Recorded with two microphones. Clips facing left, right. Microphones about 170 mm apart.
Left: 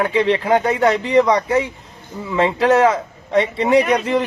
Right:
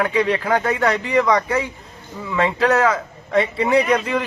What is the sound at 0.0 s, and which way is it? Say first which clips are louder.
Speech: left 2 dB; 25° left (ahead or behind).